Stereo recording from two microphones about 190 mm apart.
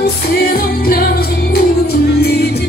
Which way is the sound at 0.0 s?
50° left (ahead or behind).